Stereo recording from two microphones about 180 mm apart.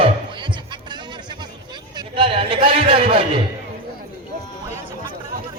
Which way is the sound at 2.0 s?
30° right (ahead or behind).